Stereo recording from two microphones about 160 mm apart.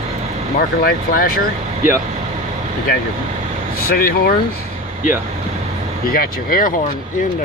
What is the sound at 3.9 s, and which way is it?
Speech, 65° left (ahead or behind).